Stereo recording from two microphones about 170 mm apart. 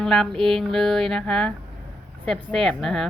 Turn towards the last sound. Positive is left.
turn(degrees=0)  # may be behind; listen again after turning